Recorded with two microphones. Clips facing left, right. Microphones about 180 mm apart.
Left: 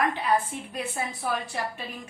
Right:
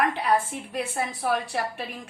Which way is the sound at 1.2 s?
65° right (ahead or behind).